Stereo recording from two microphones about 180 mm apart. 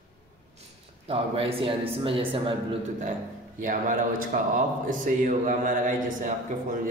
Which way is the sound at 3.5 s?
45° right (ahead or behind).